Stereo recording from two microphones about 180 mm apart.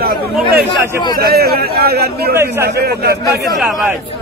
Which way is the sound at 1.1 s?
60° right (ahead or behind).